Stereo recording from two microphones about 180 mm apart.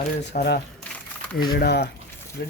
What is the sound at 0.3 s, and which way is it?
Speech, 50° left (ahead or behind).